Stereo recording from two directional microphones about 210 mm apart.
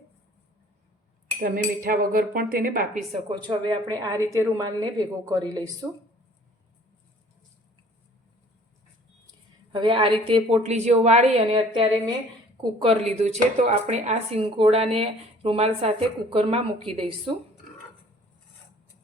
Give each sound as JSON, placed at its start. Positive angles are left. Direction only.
{"t": 1.4, "sound": "speech", "side_deg": -40}
{"t": 3.2, "sound": "a woman's voice", "side_deg": -25}
{"t": 9.7, "sound": "speech", "side_deg": -25}